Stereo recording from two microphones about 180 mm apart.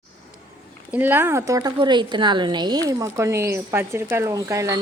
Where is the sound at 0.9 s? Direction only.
10° right (ahead or behind).